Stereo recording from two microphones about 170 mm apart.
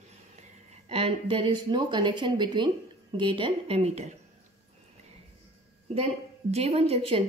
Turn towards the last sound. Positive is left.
turn(degrees=-35)  # may be behind; listen again after turning